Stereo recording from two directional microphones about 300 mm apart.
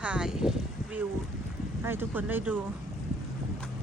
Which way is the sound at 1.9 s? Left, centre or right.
Centre.